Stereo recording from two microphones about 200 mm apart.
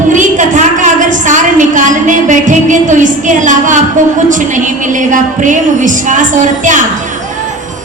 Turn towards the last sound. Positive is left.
turn(degrees=-40)  # may be behind; listen again after turning